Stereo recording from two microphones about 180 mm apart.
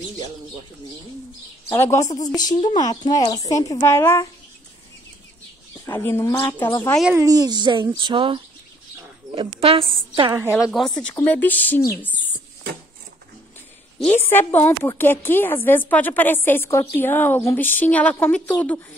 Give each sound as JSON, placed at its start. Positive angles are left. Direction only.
{"t": 1.7, "sound": "a woman's voice", "side_deg": 15}
{"t": 5.9, "sound": "a woman's voice", "side_deg": 15}
{"t": 7.2, "sound": "a woman's voice", "side_deg": -20}
{"t": 10.3, "sound": "a woman's voice", "side_deg": -15}
{"t": 10.6, "sound": "a woman's voice", "side_deg": 0}
{"t": 13.9, "sound": "a woman's voice", "side_deg": 10}